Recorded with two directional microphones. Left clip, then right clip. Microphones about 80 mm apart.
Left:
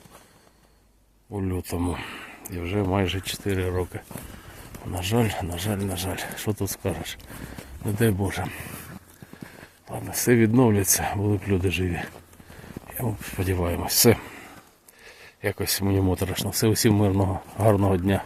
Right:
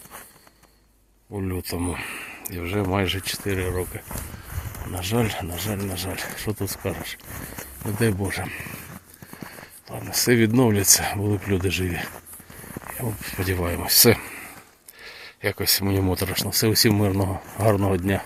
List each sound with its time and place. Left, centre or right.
1.3 s speech: left
3.2 s speech: left
7.5 s speech: left
10.1 s speech: left
13.0 s speech: left
15.0 s a sound: left
15.8 s speech: centre; by 18.2 s left